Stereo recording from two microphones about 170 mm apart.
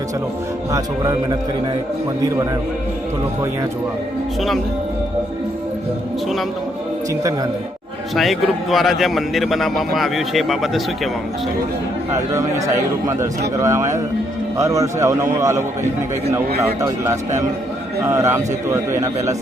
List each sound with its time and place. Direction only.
0.7 s a man's voice: 25° right (ahead or behind)
8.1 s a man's voice: centre (ahead or behind)
12.1 s a man's voice: 20° right (ahead or behind)
16.8 s a man's voice: 15° right (ahead or behind)